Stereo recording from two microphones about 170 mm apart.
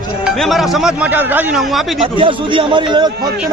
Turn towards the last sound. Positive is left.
turn(degrees=-25)  # may be behind; listen again after turning